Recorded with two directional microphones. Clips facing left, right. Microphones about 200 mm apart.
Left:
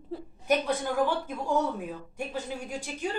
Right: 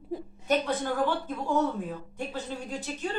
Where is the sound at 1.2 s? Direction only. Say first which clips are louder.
Right 1 dB; 10° left (ahead or behind).